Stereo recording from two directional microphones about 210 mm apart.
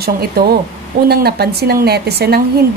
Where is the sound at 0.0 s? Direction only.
45° right (ahead or behind).